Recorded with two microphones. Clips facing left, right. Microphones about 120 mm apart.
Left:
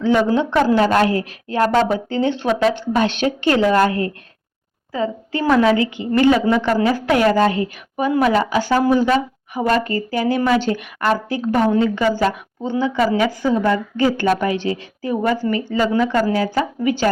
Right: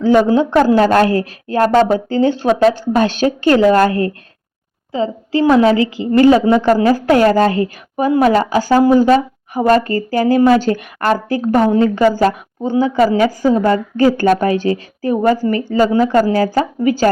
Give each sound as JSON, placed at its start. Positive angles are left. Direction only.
{"t": 0.3, "sound": "a woman's voice", "side_deg": -40}